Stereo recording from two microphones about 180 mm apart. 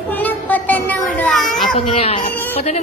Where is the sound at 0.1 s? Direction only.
10° left (ahead or behind).